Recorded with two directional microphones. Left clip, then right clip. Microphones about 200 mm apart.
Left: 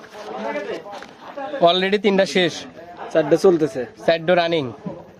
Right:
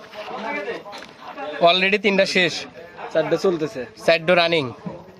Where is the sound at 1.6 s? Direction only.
10° left (ahead or behind).